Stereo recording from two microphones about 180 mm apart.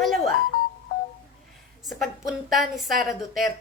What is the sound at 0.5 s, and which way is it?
Music, 50° left (ahead or behind).